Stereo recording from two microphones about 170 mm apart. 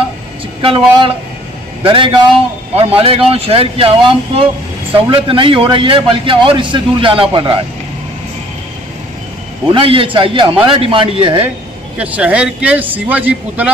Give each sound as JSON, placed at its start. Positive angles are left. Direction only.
{"t": 0.6, "sound": "a man's voice", "side_deg": -30}
{"t": 9.7, "sound": "a man's voice", "side_deg": -30}
{"t": 12.0, "sound": "speech", "side_deg": -10}